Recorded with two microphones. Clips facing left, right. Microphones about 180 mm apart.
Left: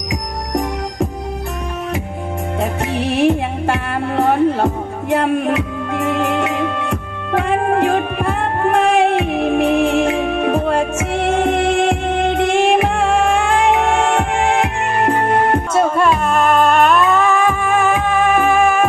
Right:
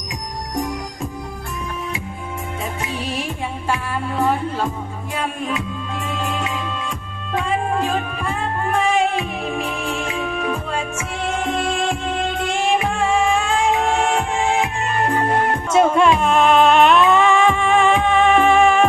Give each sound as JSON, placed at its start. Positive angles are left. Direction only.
{"t": 2.6, "sound": "music", "side_deg": 65}
{"t": 15.7, "sound": "music", "side_deg": 0}